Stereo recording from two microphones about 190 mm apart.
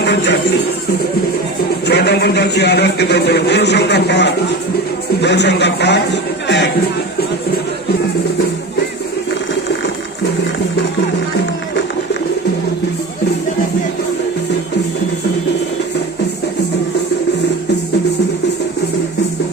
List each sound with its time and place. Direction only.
0.0 s speech: 65° left (ahead or behind)
1.9 s a man's voice: 60° left (ahead or behind)